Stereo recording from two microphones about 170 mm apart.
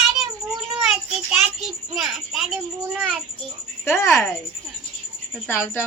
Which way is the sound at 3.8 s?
15° left (ahead or behind).